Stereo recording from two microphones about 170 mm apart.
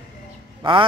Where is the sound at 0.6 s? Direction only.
30° right (ahead or behind).